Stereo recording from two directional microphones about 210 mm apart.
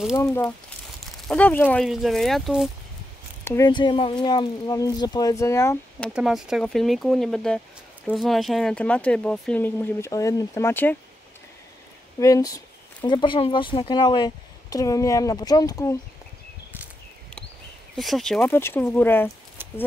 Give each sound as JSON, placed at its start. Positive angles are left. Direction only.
{"t": 0.1, "sound": "speech", "side_deg": 15}
{"t": 1.1, "sound": "speech", "side_deg": 5}
{"t": 3.4, "sound": "speech", "side_deg": 15}
{"t": 12.2, "sound": "speech", "side_deg": 15}
{"t": 17.9, "sound": "speech", "side_deg": 0}
{"t": 19.6, "sound": "a sound", "side_deg": -10}